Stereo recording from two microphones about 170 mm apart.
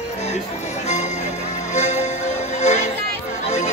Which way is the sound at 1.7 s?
40° left (ahead or behind).